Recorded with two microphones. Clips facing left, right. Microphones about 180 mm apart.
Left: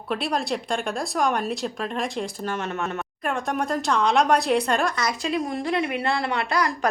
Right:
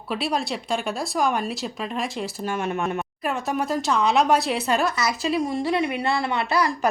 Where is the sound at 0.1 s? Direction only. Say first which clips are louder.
Even; centre (ahead or behind).